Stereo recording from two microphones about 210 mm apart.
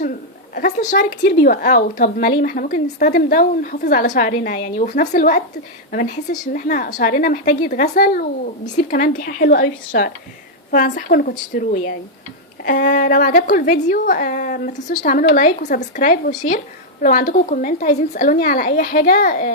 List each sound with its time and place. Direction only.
0.0 s a woman's voice: 45° left (ahead or behind)